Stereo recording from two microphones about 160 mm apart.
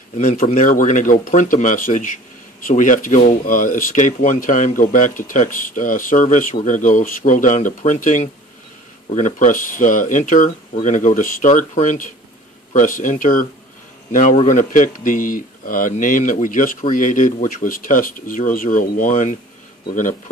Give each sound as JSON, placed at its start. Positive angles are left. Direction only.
{"t": 0.2, "sound": "speech", "side_deg": 50}
{"t": 14.1, "sound": "speech", "side_deg": 45}